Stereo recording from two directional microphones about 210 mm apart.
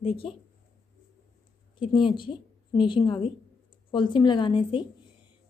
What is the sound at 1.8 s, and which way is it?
A woman's voice, 25° left (ahead or behind).